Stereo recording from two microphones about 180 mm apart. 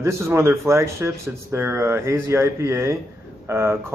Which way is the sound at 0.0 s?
15° right (ahead or behind).